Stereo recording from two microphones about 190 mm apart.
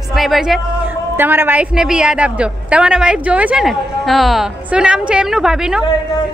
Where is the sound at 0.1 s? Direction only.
Centre (ahead or behind).